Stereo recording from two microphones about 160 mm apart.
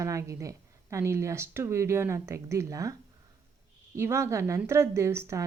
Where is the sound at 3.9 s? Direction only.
15° right (ahead or behind).